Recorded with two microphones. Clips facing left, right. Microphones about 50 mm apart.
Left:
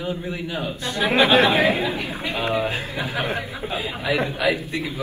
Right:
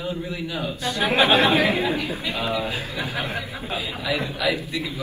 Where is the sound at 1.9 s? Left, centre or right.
Left.